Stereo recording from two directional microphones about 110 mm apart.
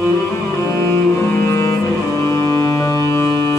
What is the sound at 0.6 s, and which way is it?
Cello, 30° left (ahead or behind).